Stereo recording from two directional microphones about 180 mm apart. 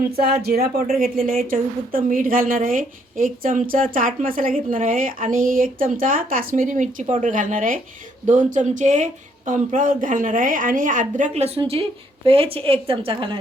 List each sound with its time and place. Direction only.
0.4 s speech: 60° right (ahead or behind); by 13.4 s 30° right (ahead or behind)